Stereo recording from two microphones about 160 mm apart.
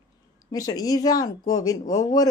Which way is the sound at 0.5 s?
20° left (ahead or behind).